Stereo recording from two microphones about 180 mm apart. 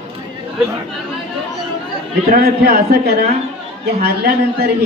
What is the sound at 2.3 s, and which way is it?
A man's voice, 60° right (ahead or behind).